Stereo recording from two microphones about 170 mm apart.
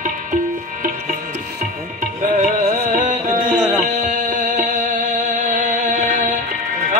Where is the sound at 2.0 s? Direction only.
50° right (ahead or behind).